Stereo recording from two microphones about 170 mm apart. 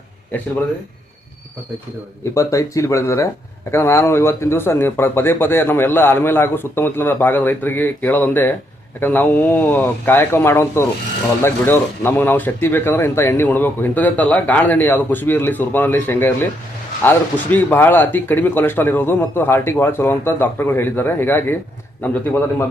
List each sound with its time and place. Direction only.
2.3 s speech: 20° left (ahead or behind)